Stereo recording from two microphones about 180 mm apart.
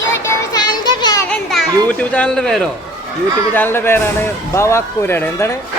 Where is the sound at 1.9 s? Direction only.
5° left (ahead or behind).